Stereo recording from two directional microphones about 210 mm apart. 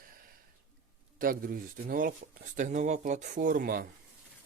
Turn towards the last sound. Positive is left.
turn(degrees=-45)  # may be behind; listen again after turning